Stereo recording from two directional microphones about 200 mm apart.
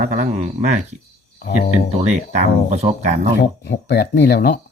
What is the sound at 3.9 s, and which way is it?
Speech, 60° left (ahead or behind).